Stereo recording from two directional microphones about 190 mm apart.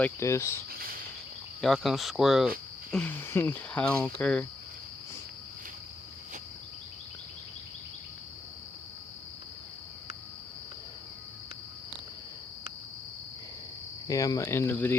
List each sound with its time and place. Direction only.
0.0 s speech: 15° left (ahead or behind)
0.7 s cricket: 50° right (ahead or behind)
1.6 s speech: centre (ahead or behind)
14.1 s speech: 20° left (ahead or behind)